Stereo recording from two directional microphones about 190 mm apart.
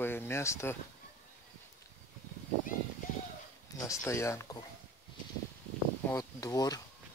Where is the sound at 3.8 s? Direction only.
15° left (ahead or behind).